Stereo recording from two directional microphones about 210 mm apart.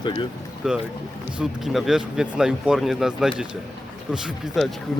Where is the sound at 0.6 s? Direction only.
5° right (ahead or behind).